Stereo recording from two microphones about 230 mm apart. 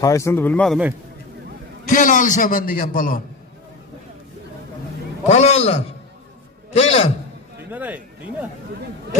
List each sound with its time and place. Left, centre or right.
0.0 s a man's voice: centre
1.9 s a man's voice: left
5.3 s a man's voice: left
7.7 s speech: centre